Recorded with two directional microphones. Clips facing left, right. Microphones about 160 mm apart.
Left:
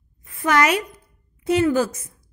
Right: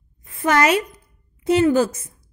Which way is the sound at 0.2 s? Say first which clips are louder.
Right 1 dB; 25° right (ahead or behind).